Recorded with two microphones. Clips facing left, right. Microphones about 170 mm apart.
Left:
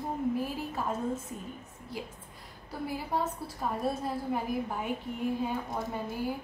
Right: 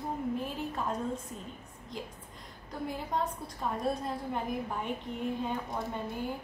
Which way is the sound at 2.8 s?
5° left (ahead or behind).